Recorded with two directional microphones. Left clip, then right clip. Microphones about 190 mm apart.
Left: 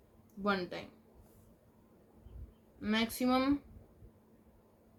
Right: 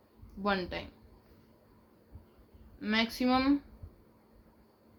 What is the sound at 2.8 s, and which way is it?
Speech, 40° right (ahead or behind).